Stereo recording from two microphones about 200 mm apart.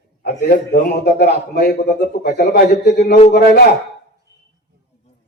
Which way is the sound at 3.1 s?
35° left (ahead or behind).